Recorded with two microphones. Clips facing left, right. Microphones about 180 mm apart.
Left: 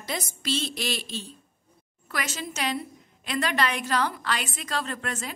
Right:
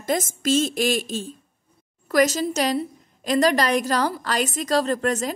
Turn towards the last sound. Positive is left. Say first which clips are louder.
# right 11 dB
turn(degrees=-40)  # may be behind; listen again after turning